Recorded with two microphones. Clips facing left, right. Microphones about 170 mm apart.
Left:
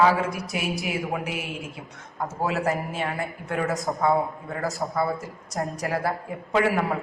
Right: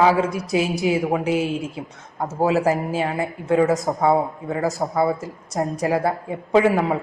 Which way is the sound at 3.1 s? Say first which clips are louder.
Right 9 dB; 25° right (ahead or behind).